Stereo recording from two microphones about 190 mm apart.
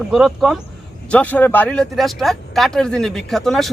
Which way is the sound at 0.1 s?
Centre (ahead or behind).